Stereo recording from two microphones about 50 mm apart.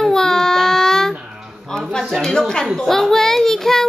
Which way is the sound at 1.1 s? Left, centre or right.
Centre.